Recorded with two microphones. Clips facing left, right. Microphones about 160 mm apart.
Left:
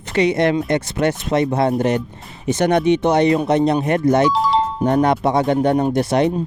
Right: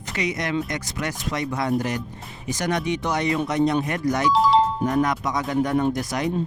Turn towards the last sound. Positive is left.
turn(degrees=30)  # may be behind; listen again after turning